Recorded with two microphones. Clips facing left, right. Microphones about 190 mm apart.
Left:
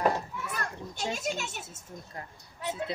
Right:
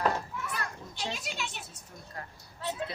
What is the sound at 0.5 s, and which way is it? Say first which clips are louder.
Children playing: left 2 dB; 45° left (ahead or behind).